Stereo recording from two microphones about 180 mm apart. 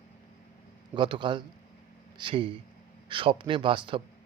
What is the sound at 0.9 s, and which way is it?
Speech, 25° right (ahead or behind).